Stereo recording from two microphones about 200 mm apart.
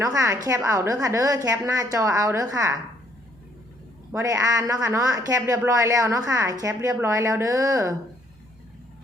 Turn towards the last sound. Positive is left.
turn(degrees=-15)  # may be behind; listen again after turning